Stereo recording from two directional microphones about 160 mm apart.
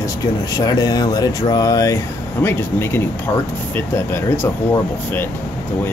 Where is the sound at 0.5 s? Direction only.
25° left (ahead or behind).